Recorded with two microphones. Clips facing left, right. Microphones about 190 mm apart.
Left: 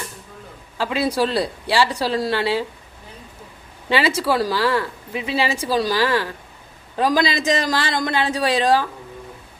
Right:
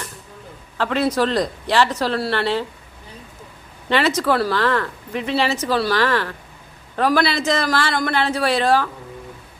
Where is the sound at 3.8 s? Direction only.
10° left (ahead or behind).